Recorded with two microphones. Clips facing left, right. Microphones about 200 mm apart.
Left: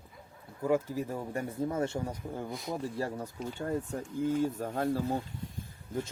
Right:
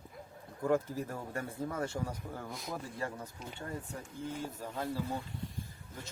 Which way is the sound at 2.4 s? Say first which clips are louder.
Left 5 dB; centre (ahead or behind).